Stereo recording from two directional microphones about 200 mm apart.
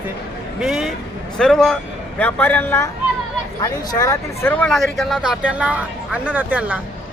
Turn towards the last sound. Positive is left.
turn(degrees=-10)  # may be behind; listen again after turning